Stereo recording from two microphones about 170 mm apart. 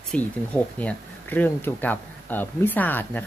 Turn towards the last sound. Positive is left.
turn(degrees=10)  # may be behind; listen again after turning